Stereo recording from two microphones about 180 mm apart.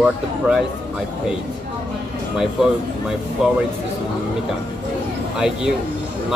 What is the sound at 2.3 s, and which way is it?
Speech, 5° right (ahead or behind).